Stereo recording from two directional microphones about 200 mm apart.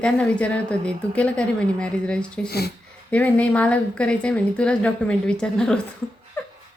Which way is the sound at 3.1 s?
5° left (ahead or behind).